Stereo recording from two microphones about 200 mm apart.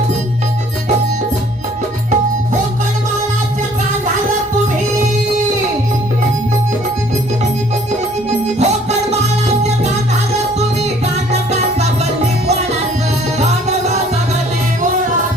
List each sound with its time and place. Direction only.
8.3 s music: 35° right (ahead or behind)
11.3 s music: 35° right (ahead or behind)